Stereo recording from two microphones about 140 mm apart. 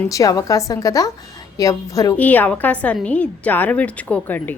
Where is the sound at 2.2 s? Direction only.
10° left (ahead or behind).